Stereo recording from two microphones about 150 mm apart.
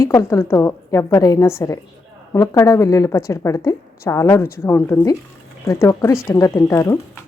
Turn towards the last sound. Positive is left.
turn(degrees=15)  # may be behind; listen again after turning